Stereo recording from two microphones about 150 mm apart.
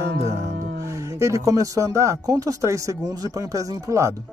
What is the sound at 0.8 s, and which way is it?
Speech, 20° right (ahead or behind).